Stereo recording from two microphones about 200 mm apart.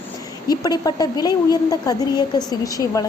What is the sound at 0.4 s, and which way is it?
A woman's voice, 20° left (ahead or behind).